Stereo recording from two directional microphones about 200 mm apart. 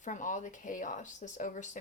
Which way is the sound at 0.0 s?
40° left (ahead or behind).